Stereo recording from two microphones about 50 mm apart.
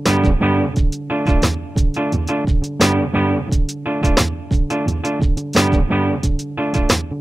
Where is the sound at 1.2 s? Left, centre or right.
Centre.